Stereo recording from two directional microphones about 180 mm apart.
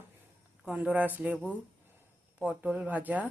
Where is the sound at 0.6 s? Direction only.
5° right (ahead or behind).